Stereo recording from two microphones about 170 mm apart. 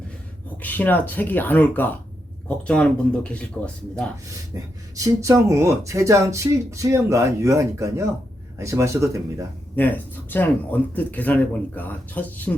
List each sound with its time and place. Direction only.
0.6 s speech: 10° left (ahead or behind)
4.5 s a sound: 20° right (ahead or behind)
4.9 s speech: 20° right (ahead or behind)
9.7 s speech: 10° left (ahead or behind)